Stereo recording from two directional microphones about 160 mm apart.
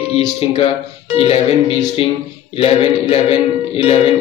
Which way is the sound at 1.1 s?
40° left (ahead or behind).